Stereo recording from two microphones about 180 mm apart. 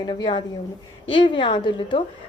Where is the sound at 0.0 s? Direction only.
25° left (ahead or behind).